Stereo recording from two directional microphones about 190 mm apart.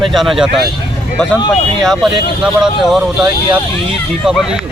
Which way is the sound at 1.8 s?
Centre (ahead or behind).